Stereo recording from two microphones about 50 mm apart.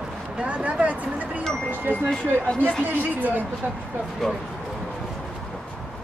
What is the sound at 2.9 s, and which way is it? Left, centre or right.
Speech, right.